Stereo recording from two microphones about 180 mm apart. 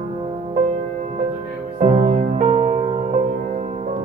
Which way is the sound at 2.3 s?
45° right (ahead or behind).